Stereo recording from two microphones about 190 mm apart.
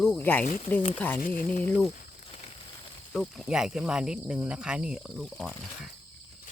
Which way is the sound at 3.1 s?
Centre (ahead or behind).